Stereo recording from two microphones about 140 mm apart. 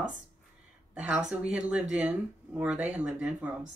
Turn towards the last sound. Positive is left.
turn(degrees=-10)  # may be behind; listen again after turning